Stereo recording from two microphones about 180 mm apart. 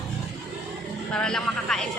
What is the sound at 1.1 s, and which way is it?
Speech, 5° left (ahead or behind).